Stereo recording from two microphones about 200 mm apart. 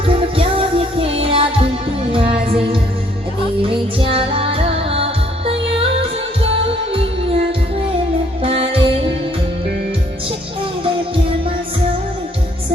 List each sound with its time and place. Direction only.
0.0 s music: 25° right (ahead or behind)
6.9 s music: 30° right (ahead or behind)
8.4 s music: 30° right (ahead or behind)